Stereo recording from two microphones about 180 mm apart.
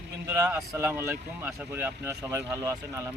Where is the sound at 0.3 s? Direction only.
10° right (ahead or behind).